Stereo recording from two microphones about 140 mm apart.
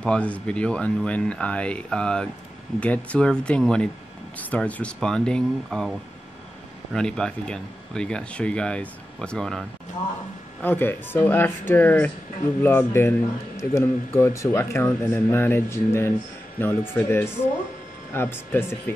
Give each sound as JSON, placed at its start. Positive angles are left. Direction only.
{"t": 0.0, "sound": "speech", "side_deg": 10}
{"t": 10.6, "sound": "speech", "side_deg": 15}